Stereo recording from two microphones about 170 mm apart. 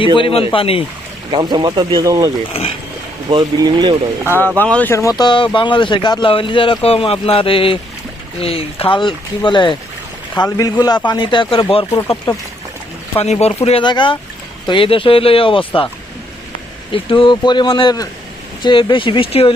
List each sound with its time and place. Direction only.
0.2 s speech: 30° left (ahead or behind)
1.3 s speech: 25° right (ahead or behind)
2.5 s speech: 35° left (ahead or behind)
3.2 s speech: 25° right (ahead or behind)
4.5 s speech: 10° left (ahead or behind); by 15.9 s 30° left (ahead or behind)
16.9 s speech: 30° left (ahead or behind)